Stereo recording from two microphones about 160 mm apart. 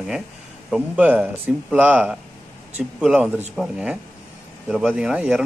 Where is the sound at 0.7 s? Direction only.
10° right (ahead or behind).